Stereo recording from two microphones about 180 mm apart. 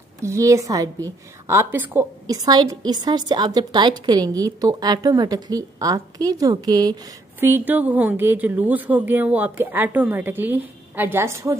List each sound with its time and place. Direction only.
0.2 s a woman's voice: 15° right (ahead or behind)
7.3 s speech: 10° right (ahead or behind)